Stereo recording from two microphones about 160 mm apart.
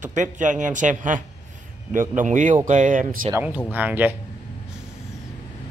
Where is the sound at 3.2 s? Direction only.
15° right (ahead or behind).